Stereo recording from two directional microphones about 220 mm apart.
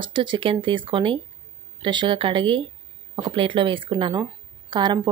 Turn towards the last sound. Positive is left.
turn(degrees=-20)  # may be behind; listen again after turning